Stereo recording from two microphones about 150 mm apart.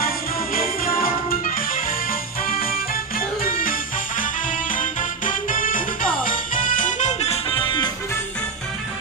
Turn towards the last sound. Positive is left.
turn(degrees=35)  # may be behind; listen again after turning